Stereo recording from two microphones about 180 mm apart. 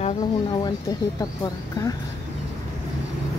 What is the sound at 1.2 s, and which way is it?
Speech, 20° left (ahead or behind).